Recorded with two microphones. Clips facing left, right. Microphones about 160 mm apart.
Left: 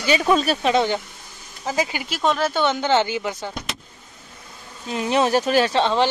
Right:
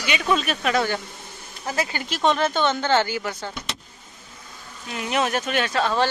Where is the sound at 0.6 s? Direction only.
20° left (ahead or behind).